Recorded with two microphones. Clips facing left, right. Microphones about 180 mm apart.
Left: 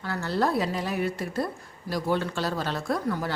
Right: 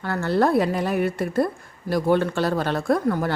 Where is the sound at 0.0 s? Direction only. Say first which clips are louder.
Right 6 dB; 55° right (ahead or behind).